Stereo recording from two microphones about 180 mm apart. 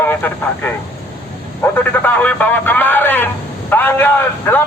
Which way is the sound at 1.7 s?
10° left (ahead or behind).